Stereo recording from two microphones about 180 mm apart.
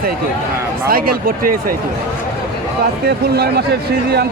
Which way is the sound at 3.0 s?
65° right (ahead or behind).